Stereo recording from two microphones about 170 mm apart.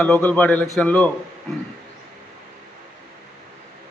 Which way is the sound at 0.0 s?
10° left (ahead or behind).